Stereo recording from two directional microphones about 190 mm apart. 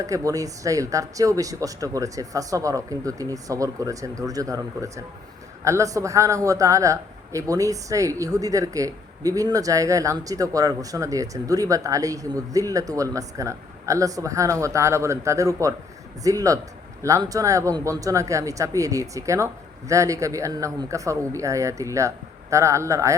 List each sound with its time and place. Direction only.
0.0 s a man's voice: 15° right (ahead or behind)